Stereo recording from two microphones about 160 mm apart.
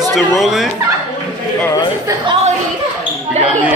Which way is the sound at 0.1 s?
Centre (ahead or behind).